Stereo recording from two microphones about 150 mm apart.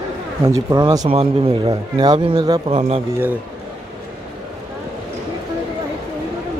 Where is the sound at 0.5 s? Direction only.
25° right (ahead or behind).